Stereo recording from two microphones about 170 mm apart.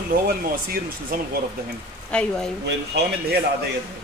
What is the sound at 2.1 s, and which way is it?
Speech, 5° left (ahead or behind).